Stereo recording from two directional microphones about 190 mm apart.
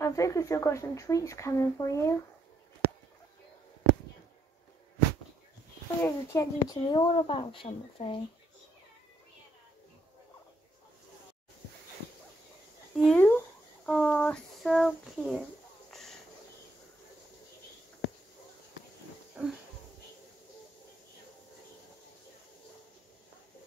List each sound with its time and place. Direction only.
0.0 s speech: 15° left (ahead or behind)
6.0 s speech: 15° left (ahead or behind)
12.9 s speech: centre (ahead or behind)
19.4 s a sound: 5° right (ahead or behind)